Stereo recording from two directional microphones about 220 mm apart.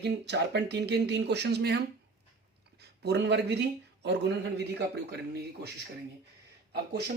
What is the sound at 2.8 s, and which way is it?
Speech, 50° right (ahead or behind).